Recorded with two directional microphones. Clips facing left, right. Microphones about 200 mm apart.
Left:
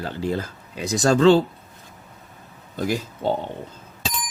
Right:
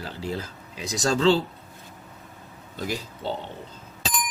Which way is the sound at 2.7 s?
50° left (ahead or behind).